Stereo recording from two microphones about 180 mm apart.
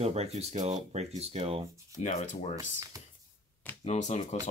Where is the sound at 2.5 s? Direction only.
20° right (ahead or behind).